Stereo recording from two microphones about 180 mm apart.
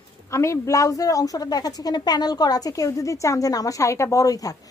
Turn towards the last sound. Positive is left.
turn(degrees=20)  # may be behind; listen again after turning